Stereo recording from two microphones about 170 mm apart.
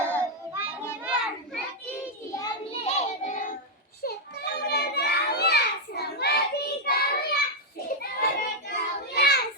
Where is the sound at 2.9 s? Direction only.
45° left (ahead or behind).